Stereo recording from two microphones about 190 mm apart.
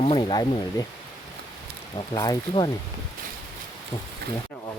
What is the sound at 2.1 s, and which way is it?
Speech, 20° left (ahead or behind).